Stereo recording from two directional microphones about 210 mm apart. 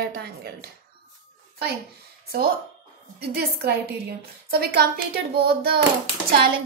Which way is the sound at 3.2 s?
50° right (ahead or behind).